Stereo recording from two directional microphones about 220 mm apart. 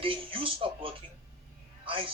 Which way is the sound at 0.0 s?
25° right (ahead or behind).